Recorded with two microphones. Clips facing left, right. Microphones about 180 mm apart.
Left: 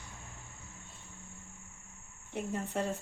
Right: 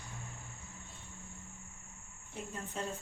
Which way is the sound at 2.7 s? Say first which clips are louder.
Left 5 dB; 70° left (ahead or behind).